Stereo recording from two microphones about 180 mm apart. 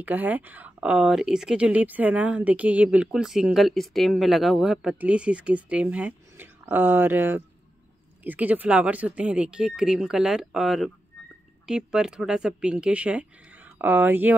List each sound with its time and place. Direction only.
0.0 s speech: 10° right (ahead or behind)